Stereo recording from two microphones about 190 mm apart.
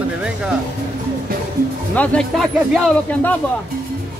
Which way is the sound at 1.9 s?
5° left (ahead or behind).